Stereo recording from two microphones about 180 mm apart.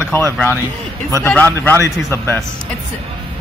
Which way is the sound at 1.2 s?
10° left (ahead or behind).